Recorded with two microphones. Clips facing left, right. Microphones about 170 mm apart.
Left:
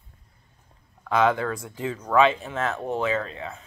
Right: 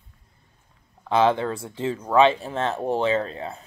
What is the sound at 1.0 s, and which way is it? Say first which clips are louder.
Speech: right 2 dB; 30° right (ahead or behind).